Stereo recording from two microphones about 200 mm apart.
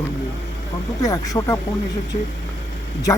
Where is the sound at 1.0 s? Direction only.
15° left (ahead or behind).